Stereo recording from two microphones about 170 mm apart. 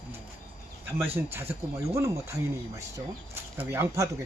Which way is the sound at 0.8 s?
10° right (ahead or behind).